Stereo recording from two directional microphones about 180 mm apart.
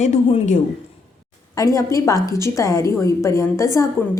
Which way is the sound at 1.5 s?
20° left (ahead or behind).